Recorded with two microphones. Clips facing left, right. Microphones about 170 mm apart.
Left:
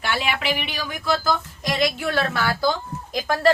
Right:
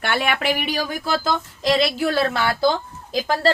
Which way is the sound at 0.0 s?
55° right (ahead or behind).